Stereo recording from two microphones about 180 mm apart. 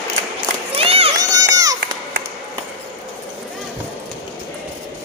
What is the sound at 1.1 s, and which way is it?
Run, 20° right (ahead or behind).